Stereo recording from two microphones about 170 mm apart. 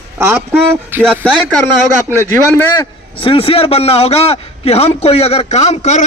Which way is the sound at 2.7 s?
30° left (ahead or behind).